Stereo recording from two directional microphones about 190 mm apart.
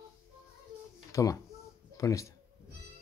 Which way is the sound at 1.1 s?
15° left (ahead or behind).